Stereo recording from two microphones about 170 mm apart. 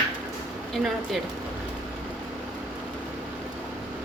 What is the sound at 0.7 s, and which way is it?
Speech, centre (ahead or behind).